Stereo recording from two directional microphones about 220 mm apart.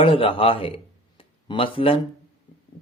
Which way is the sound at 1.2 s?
25° left (ahead or behind).